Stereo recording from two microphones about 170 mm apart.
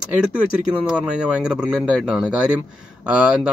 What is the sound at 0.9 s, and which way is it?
Speech, 5° right (ahead or behind).